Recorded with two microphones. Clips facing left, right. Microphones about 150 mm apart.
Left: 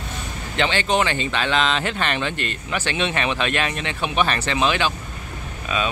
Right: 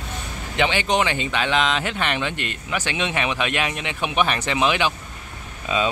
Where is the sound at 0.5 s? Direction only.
15° right (ahead or behind).